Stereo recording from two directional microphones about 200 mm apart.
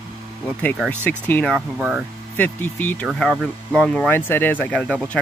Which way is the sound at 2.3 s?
10° left (ahead or behind).